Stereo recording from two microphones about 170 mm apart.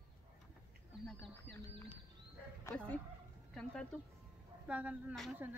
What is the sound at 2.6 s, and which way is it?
Speech, 5° left (ahead or behind).